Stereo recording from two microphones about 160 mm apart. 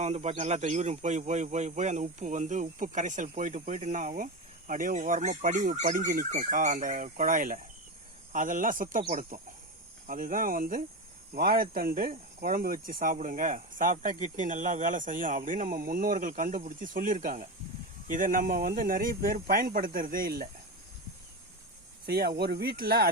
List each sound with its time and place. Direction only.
0.0 s speech: 45° right (ahead or behind)
10.1 s speech: 60° right (ahead or behind)
22.0 s speech: 80° right